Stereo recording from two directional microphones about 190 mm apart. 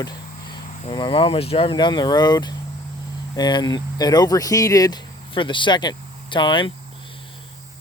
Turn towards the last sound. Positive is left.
turn(degrees=25)  # may be behind; listen again after turning